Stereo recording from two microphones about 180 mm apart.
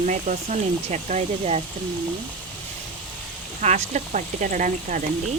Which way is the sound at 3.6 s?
40° right (ahead or behind).